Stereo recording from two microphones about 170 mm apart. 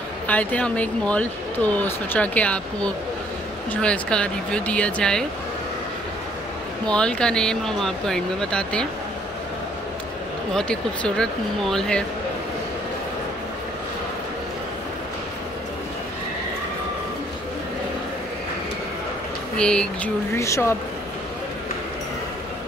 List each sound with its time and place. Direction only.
0.3 s speech: 10° left (ahead or behind)
6.9 s speech: 5° left (ahead or behind)
10.5 s speech: 5° left (ahead or behind)
19.5 s speech: 5° left (ahead or behind)
20.3 s speech: 15° left (ahead or behind)